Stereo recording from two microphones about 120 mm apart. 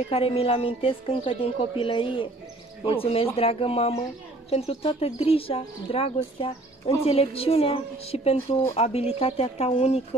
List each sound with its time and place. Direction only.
0.1 s a woman's voice: 55° left (ahead or behind)